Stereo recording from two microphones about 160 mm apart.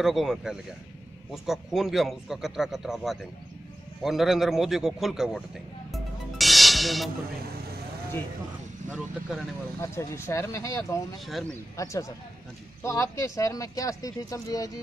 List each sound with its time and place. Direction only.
0.0 s a man's voice: centre (ahead or behind)
5.9 s music: centre (ahead or behind)
8.9 s a man's voice: 5° right (ahead or behind)
9.8 s speech: 15° left (ahead or behind)